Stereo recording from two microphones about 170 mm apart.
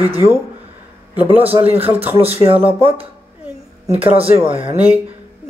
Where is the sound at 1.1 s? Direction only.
10° right (ahead or behind).